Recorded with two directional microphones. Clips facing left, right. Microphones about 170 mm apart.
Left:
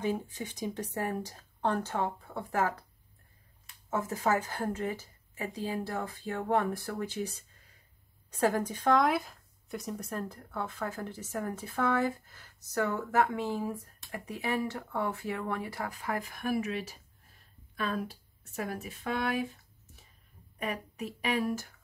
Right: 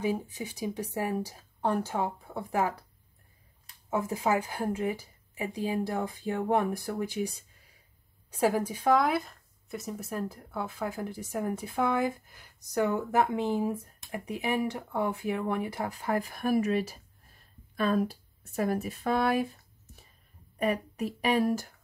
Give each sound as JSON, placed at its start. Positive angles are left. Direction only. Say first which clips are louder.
{"t": 0.0, "sound": "speech", "louder": "right 2 dB", "side_deg": -10}
{"t": 3.9, "sound": "speech", "louder": "right 2 dB", "side_deg": -10}
{"t": 20.5, "sound": "speech", "louder": "right 7 dB", "side_deg": -35}